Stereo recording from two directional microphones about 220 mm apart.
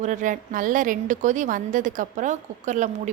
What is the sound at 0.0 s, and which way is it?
A woman's voice, 35° right (ahead or behind).